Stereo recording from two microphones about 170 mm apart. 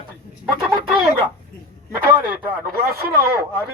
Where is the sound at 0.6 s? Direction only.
Centre (ahead or behind).